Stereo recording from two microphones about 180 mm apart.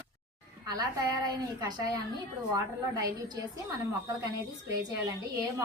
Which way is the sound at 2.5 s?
20° right (ahead or behind).